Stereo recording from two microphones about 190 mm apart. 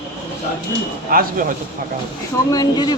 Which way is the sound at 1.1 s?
50° right (ahead or behind).